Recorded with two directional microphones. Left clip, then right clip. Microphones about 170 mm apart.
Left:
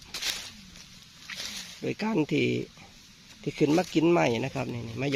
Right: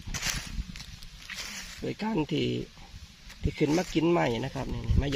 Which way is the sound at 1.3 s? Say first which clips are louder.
Left 1 dB; 30° left (ahead or behind).